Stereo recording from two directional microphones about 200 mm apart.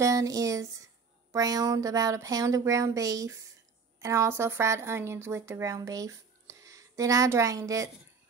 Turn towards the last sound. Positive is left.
turn(degrees=-15)  # may be behind; listen again after turning